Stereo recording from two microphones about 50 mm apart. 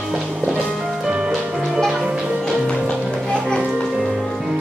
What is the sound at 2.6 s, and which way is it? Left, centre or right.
Music, centre.